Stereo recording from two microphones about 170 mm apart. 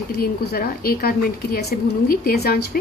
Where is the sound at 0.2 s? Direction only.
60° left (ahead or behind).